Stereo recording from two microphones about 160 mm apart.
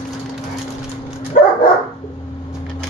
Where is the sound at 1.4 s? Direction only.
55° left (ahead or behind).